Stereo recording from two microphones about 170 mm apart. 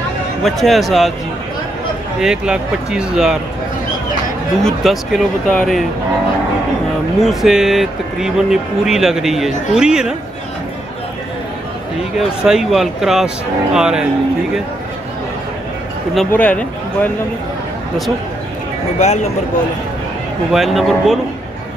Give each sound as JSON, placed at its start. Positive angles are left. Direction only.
{"t": 0.4, "sound": "speech", "side_deg": 0}
{"t": 2.1, "sound": "speech", "side_deg": -5}
{"t": 4.6, "sound": "speech", "side_deg": 0}
{"t": 7.2, "sound": "speech", "side_deg": 0}
{"t": 12.2, "sound": "speech", "side_deg": 0}
{"t": 16.3, "sound": "speech", "side_deg": 10}
{"t": 18.9, "sound": "speech", "side_deg": 40}
{"t": 20.5, "sound": "speech", "side_deg": 0}